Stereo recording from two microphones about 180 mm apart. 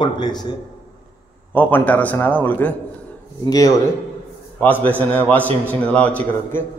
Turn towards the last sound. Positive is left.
turn(degrees=10)  # may be behind; listen again after turning